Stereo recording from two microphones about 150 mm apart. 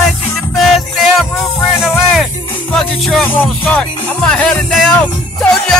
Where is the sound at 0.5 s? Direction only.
Centre (ahead or behind).